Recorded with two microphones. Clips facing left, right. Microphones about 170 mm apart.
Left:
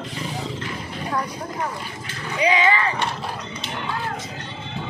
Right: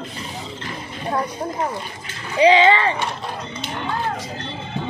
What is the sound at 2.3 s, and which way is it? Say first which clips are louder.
Speech: right 6 dB; 30° right (ahead or behind).